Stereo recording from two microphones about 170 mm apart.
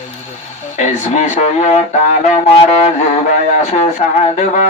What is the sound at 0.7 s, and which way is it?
Speech, 45° left (ahead or behind).